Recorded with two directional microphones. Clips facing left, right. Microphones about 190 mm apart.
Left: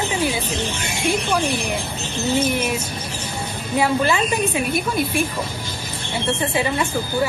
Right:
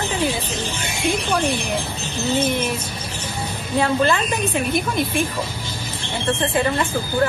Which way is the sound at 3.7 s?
10° left (ahead or behind).